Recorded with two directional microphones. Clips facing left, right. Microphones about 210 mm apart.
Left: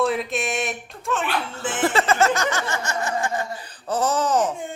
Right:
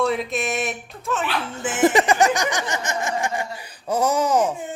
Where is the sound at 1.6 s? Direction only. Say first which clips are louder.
Right 4 dB; 10° right (ahead or behind).